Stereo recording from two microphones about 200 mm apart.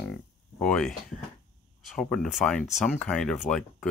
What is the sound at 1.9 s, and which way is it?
Speech, 5° left (ahead or behind).